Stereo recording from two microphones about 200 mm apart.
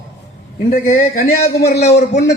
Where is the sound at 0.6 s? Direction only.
45° left (ahead or behind).